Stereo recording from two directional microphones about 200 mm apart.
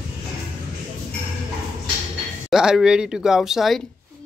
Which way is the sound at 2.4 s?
Centre (ahead or behind).